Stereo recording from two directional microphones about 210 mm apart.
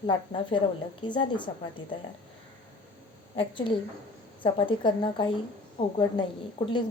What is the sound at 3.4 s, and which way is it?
A woman's voice, 25° left (ahead or behind).